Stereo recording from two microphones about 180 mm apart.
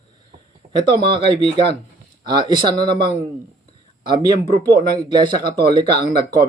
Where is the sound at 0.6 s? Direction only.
45° right (ahead or behind).